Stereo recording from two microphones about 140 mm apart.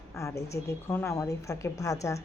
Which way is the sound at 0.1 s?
20° left (ahead or behind).